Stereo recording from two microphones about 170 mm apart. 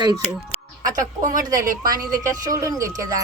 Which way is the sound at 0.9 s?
50° right (ahead or behind).